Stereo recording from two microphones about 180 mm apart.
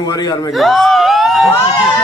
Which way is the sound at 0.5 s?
Centre (ahead or behind).